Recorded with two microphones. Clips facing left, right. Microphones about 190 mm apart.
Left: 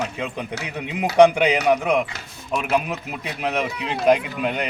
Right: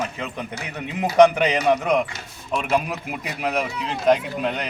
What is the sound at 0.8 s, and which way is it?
A man's voice, 15° left (ahead or behind).